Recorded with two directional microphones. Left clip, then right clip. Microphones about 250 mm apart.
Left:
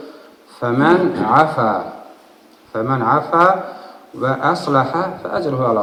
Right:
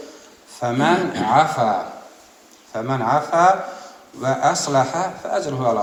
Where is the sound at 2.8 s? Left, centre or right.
Right.